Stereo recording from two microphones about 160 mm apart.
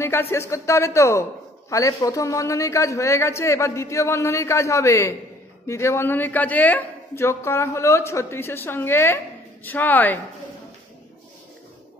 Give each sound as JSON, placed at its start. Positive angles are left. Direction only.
{"t": 0.0, "sound": "a man's voice", "side_deg": 15}